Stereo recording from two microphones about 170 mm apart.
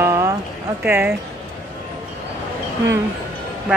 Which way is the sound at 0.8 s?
10° right (ahead or behind).